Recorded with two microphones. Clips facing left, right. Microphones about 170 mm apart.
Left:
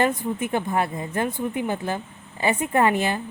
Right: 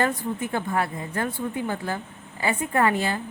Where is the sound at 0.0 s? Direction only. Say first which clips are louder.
Left 2 dB; 20° left (ahead or behind).